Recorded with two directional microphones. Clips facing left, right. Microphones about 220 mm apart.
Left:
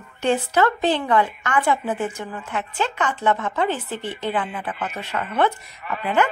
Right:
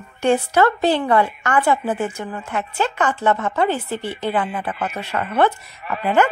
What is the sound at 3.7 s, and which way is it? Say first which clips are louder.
Speech: right 3 dB; 10° right (ahead or behind).